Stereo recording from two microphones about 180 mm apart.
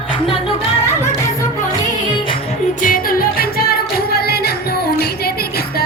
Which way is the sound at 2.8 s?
50° left (ahead or behind).